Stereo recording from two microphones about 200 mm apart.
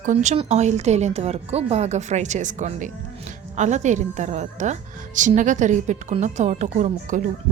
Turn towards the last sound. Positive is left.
turn(degrees=-35)  # may be behind; listen again after turning